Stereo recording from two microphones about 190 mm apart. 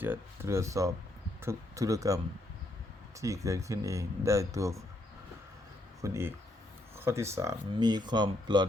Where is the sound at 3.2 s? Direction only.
15° right (ahead or behind).